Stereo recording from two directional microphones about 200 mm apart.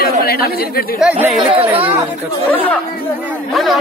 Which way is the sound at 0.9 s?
5° right (ahead or behind).